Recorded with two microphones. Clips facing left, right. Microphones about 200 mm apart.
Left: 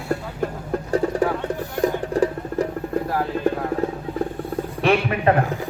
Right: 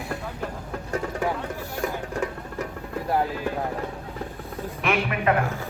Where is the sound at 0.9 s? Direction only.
35° left (ahead or behind).